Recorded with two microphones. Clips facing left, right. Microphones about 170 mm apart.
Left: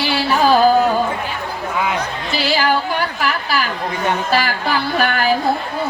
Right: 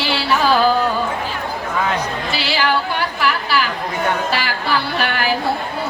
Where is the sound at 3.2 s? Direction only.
45° left (ahead or behind).